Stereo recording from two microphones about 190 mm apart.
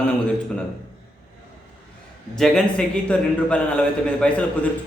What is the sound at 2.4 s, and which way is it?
A man's voice, 5° left (ahead or behind).